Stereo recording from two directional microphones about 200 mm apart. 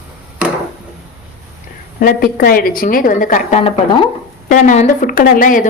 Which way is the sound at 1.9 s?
45° left (ahead or behind).